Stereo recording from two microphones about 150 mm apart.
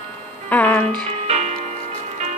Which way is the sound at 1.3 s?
50° right (ahead or behind).